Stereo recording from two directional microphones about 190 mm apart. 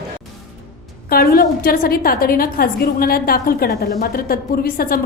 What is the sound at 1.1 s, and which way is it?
A woman's voice, 50° left (ahead or behind).